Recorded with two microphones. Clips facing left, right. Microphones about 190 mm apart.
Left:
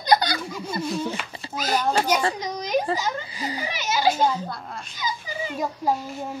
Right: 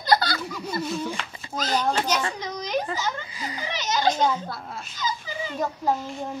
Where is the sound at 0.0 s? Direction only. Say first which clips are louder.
Left 2 dB; 15° left (ahead or behind).